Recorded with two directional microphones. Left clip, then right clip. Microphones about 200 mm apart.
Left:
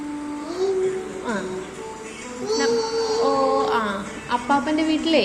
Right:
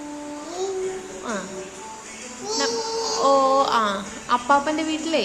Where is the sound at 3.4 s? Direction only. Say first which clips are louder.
Right 2 dB; 25° right (ahead or behind).